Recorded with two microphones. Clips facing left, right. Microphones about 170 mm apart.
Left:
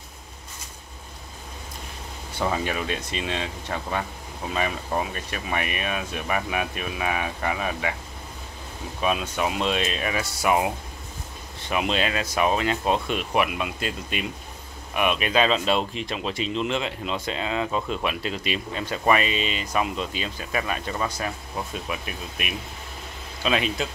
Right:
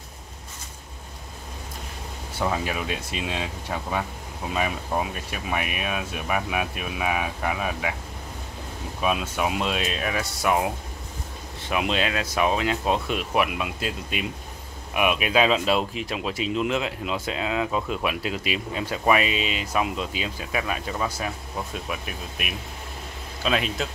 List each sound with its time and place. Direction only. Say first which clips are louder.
2.3 s speech: left 1 dB; centre (ahead or behind)
9.0 s speech: even; 5° right (ahead or behind)
11.7 s speech: even; centre (ahead or behind)